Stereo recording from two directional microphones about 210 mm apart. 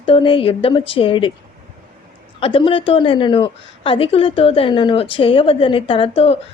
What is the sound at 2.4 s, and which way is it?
A woman's voice, 25° left (ahead or behind).